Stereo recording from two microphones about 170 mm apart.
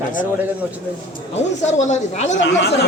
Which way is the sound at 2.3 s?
90° left.